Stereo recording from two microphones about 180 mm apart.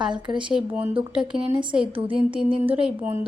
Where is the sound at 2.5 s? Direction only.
5° right (ahead or behind).